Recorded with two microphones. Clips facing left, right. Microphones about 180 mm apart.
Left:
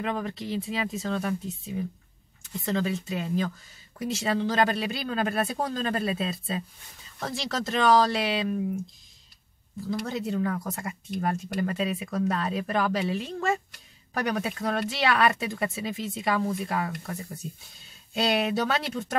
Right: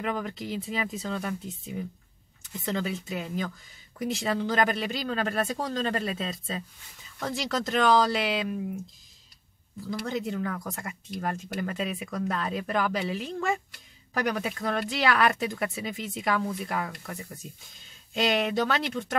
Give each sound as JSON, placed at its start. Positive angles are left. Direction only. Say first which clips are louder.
{"t": 0.0, "sound": "speech", "louder": "left 1 dB", "side_deg": 0}
{"t": 9.8, "sound": "speech", "louder": "left 1 dB", "side_deg": 0}
{"t": 18.3, "sound": "speech", "louder": "left 1 dB", "side_deg": 10}